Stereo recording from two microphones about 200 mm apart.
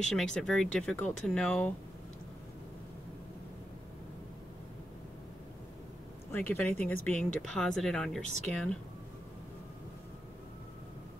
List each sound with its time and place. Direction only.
0.0 s speech: 5° left (ahead or behind)
6.3 s speech: 10° left (ahead or behind)